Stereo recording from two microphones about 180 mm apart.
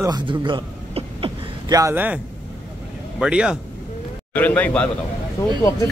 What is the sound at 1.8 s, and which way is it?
Speech, 10° right (ahead or behind).